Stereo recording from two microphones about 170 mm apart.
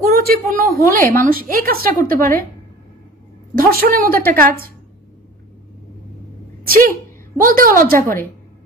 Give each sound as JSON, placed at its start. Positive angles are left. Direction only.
{"t": 0.0, "sound": "a woman's voice", "side_deg": -60}
{"t": 3.5, "sound": "a woman's voice", "side_deg": -60}
{"t": 6.7, "sound": "a woman's voice", "side_deg": -55}